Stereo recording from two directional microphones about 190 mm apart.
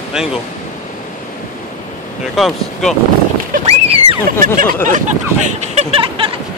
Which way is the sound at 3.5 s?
30° right (ahead or behind).